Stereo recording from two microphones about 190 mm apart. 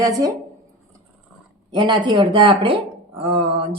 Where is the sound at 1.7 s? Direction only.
25° right (ahead or behind).